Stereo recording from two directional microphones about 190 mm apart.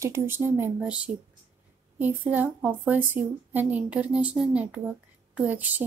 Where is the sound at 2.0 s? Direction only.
10° right (ahead or behind).